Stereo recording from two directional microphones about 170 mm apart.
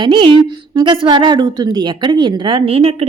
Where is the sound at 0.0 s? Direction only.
30° right (ahead or behind).